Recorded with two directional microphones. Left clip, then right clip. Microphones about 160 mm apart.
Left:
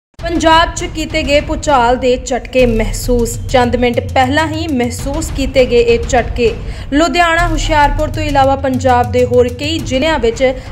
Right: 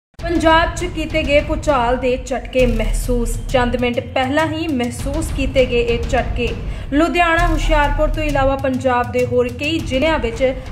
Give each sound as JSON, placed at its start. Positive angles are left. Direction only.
{"t": 0.2, "sound": "speech", "side_deg": 35}